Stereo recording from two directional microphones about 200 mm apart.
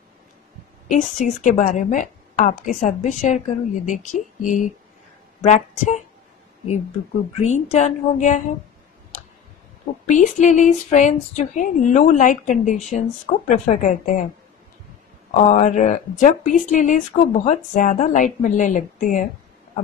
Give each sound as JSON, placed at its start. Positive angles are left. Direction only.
{"t": 0.8, "sound": "speech", "side_deg": 40}
{"t": 7.3, "sound": "speech", "side_deg": 35}
{"t": 10.0, "sound": "speech", "side_deg": 40}
{"t": 15.3, "sound": "speech", "side_deg": 40}